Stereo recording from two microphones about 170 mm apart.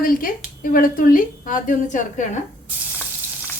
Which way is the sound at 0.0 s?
55° left (ahead or behind).